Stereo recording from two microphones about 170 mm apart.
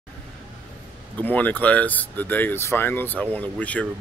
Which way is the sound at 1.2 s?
10° left (ahead or behind).